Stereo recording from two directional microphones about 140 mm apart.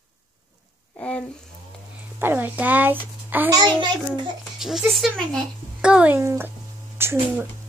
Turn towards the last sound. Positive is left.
turn(degrees=-15)  # may be behind; listen again after turning